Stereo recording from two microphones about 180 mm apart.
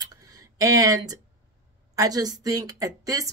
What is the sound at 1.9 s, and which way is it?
A woman's voice, 20° right (ahead or behind).